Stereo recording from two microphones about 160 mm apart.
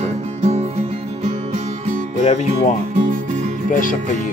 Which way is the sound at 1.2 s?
45° right (ahead or behind).